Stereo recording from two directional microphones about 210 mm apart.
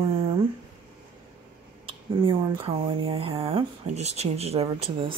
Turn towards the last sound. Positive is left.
turn(degrees=-25)  # may be behind; listen again after turning